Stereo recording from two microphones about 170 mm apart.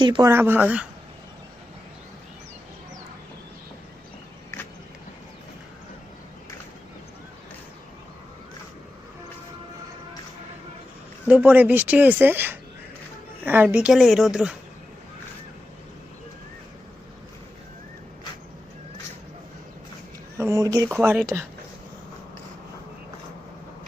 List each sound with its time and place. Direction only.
0.0 s speech: 25° right (ahead or behind)
0.3 s speech: 15° right (ahead or behind)
11.3 s a woman's voice: 10° right (ahead or behind)
20.4 s speech: 15° right (ahead or behind)